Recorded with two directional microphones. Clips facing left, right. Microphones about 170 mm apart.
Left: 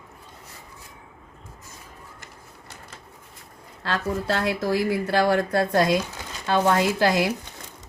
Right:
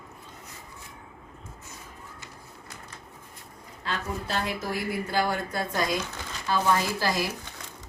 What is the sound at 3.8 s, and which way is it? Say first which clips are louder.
Speech: left 6 dB; 80° left.